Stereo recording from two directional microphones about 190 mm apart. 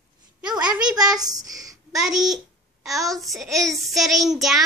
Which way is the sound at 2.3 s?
Centre (ahead or behind).